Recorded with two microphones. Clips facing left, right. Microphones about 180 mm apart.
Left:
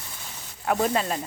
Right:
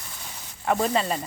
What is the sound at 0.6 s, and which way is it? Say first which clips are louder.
Speech: right 1 dB; 5° left (ahead or behind).